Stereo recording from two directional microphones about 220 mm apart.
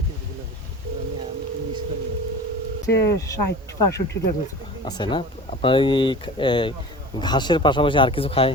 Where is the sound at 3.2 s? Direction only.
15° left (ahead or behind).